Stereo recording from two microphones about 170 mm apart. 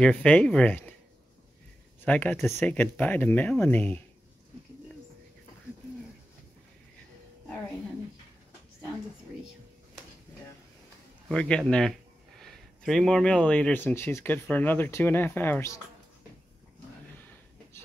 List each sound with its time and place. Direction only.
0.0 s speech: 5° left (ahead or behind)
2.0 s speech: 10° left (ahead or behind)
11.2 s speech: 5° left (ahead or behind)